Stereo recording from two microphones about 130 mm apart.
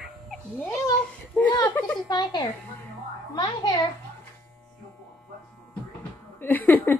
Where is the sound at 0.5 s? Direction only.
5° left (ahead or behind).